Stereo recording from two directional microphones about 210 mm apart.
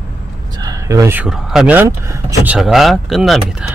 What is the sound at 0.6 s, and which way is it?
Speech, 15° right (ahead or behind).